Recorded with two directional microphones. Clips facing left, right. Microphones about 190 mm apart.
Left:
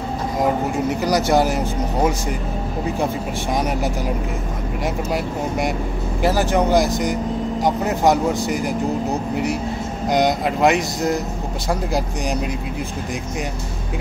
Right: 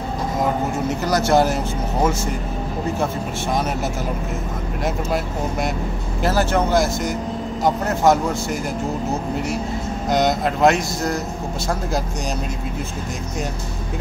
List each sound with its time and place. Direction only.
1.0 s speech: 15° left (ahead or behind)
3.5 s speech: 15° left (ahead or behind)
10.1 s speech: 15° left (ahead or behind)